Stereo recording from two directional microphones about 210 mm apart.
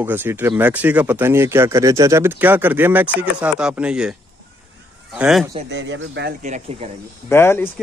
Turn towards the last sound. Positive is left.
turn(degrees=10)  # may be behind; listen again after turning